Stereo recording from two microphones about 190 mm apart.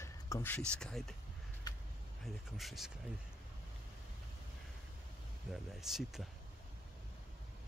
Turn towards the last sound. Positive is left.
turn(degrees=0)  # may be behind; listen again after turning